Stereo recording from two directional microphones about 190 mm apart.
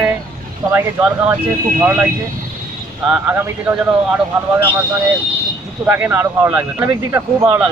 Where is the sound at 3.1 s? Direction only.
10° right (ahead or behind).